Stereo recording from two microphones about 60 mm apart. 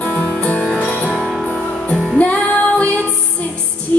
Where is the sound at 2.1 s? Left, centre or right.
Left.